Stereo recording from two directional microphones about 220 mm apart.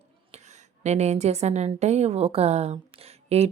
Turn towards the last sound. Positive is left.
turn(degrees=-30)  # may be behind; listen again after turning